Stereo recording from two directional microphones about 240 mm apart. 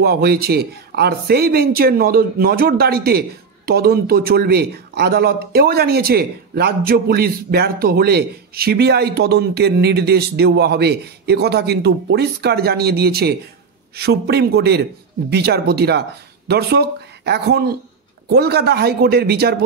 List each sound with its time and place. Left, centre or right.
0.0 s speech: right